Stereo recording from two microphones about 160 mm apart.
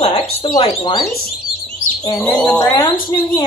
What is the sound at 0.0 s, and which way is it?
Speech, 30° left (ahead or behind).